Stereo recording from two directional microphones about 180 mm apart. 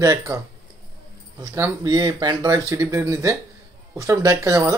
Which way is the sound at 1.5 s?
20° right (ahead or behind).